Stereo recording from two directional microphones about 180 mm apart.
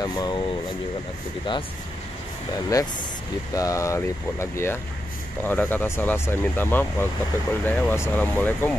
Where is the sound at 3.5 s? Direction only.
20° left (ahead or behind).